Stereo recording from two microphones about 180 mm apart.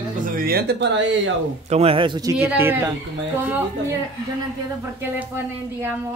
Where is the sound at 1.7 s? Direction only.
35° right (ahead or behind).